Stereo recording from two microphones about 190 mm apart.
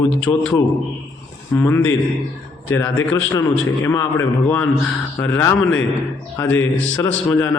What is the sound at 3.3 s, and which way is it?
A man's voice, 15° left (ahead or behind).